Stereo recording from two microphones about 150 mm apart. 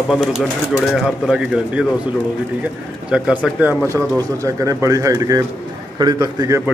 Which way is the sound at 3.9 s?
20° right (ahead or behind).